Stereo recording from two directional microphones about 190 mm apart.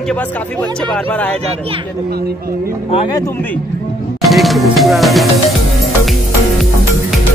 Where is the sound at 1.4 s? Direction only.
30° right (ahead or behind).